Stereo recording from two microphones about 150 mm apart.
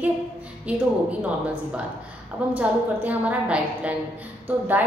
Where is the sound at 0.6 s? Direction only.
10° right (ahead or behind).